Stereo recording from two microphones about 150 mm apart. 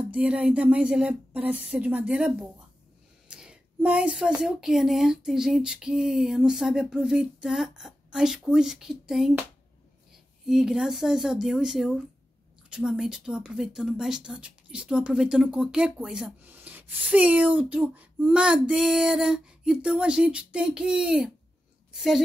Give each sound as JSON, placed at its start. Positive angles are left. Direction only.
{"t": 0.1, "sound": "a woman's voice", "side_deg": -10}
{"t": 10.4, "sound": "a woman's voice", "side_deg": -5}